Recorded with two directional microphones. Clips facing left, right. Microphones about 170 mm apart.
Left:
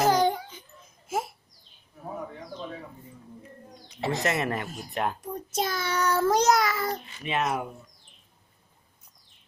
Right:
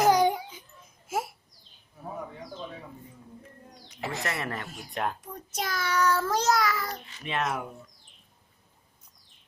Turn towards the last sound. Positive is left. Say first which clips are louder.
# left 2 dB
turn(degrees=5)  # may be behind; listen again after turning